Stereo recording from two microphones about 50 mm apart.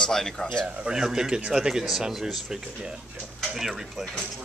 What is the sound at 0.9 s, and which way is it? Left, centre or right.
Speech, centre.